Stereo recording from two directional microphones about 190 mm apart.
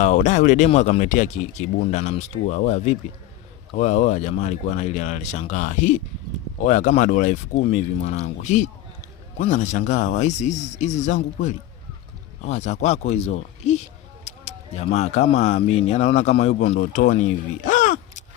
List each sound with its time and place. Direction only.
0.0 s speech: 40° left (ahead or behind)